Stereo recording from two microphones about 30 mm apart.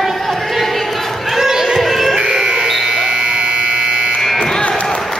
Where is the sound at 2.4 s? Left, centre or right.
Right.